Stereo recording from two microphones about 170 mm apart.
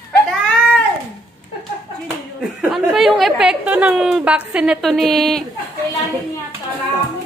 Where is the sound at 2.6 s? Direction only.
Centre (ahead or behind).